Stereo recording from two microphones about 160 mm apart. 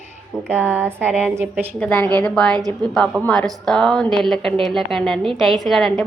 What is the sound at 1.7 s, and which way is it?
A woman's voice, 5° left (ahead or behind).